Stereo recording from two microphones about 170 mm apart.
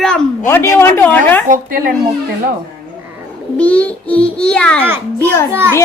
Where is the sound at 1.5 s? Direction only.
60° right (ahead or behind).